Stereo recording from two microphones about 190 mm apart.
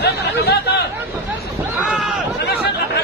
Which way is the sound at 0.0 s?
60° left (ahead or behind).